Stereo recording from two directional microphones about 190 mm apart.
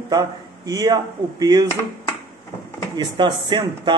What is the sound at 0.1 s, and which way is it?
Speech, 20° right (ahead or behind).